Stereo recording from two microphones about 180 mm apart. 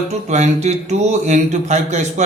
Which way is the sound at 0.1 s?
40° right (ahead or behind).